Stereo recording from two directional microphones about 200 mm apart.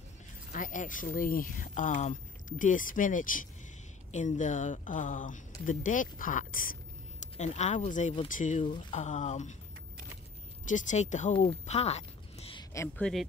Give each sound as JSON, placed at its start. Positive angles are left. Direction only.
{"t": 0.5, "sound": "speech", "side_deg": 40}
{"t": 10.7, "sound": "speech", "side_deg": 35}
{"t": 12.7, "sound": "speech", "side_deg": 10}